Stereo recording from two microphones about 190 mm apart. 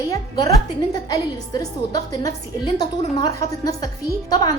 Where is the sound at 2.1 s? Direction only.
20° left (ahead or behind).